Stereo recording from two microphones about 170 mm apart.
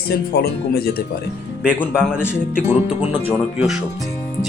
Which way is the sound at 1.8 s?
10° left (ahead or behind).